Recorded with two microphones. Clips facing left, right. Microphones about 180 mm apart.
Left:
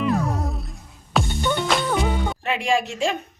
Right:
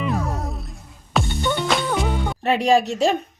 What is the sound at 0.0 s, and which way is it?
Music, centre (ahead or behind).